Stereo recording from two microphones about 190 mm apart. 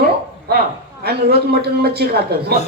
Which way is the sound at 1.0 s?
55° right (ahead or behind).